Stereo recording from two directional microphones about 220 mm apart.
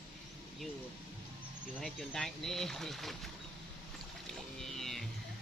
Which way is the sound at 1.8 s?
Centre (ahead or behind).